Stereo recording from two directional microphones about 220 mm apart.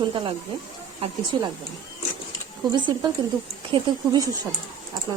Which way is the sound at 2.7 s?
20° right (ahead or behind).